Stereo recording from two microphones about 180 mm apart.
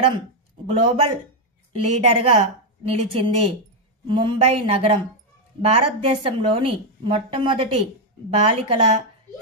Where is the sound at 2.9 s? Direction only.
30° right (ahead or behind).